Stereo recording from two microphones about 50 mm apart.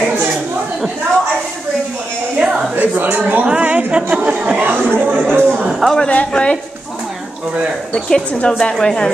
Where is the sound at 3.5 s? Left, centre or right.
Right.